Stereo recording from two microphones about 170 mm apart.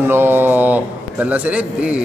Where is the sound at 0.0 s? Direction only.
15° right (ahead or behind).